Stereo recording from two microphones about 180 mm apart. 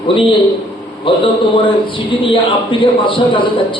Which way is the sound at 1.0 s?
30° left (ahead or behind).